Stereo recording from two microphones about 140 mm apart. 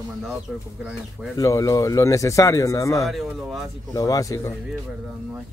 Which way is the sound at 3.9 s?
25° left (ahead or behind).